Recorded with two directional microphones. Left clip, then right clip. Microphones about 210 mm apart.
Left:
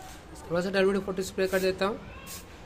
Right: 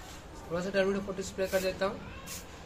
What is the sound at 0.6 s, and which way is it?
Speech, 50° left (ahead or behind).